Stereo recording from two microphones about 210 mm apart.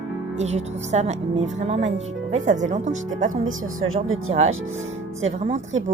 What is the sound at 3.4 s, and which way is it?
Speech, 70° right (ahead or behind).